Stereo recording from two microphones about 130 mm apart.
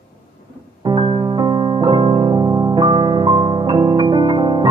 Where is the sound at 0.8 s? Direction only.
35° right (ahead or behind).